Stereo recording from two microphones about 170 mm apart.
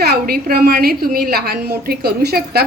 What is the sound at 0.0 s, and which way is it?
A woman's voice, 65° right (ahead or behind).